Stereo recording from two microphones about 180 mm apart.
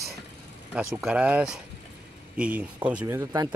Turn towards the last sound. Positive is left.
turn(degrees=-15)  # may be behind; listen again after turning